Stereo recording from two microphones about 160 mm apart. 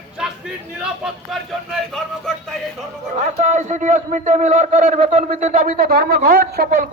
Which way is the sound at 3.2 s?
50° right (ahead or behind).